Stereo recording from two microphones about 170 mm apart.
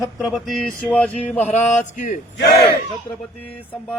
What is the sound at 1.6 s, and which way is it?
Speech, 45° left (ahead or behind).